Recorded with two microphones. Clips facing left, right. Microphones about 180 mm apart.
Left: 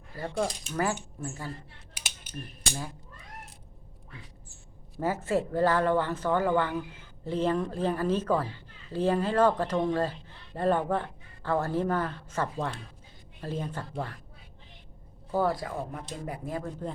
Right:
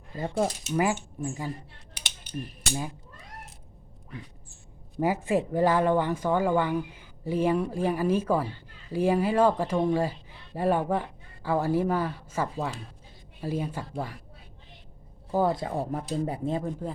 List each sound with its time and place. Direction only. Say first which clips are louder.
0.1 s speech: right 3 dB; 20° right (ahead or behind)
4.9 s speech: right 3 dB; 15° right (ahead or behind)
15.3 s speech: right 2 dB; 15° right (ahead or behind)
15.5 s speech: right 5 dB; 30° right (ahead or behind)